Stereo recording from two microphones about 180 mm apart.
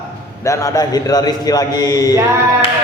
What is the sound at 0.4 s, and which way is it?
A man's voice, 15° left (ahead or behind).